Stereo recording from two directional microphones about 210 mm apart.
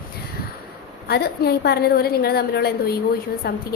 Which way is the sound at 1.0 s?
50° left (ahead or behind).